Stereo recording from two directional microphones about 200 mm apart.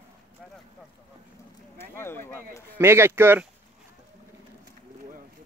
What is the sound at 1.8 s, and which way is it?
Speech, 10° left (ahead or behind).